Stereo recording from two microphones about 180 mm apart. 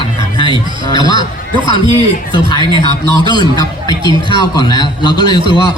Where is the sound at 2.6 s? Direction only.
25° right (ahead or behind).